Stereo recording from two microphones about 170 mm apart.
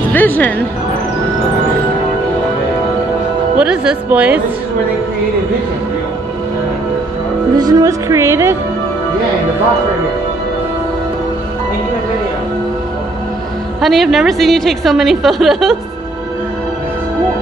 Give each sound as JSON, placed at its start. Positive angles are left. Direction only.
{"t": 0.1, "sound": "speech", "side_deg": 10}
{"t": 3.5, "sound": "a woman's voice", "side_deg": -5}
{"t": 7.5, "sound": "speech", "side_deg": -20}
{"t": 13.7, "sound": "a woman's voice", "side_deg": 0}